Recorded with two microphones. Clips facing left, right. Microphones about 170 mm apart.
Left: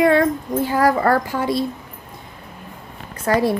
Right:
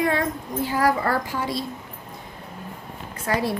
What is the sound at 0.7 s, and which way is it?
Speech, 50° left (ahead or behind).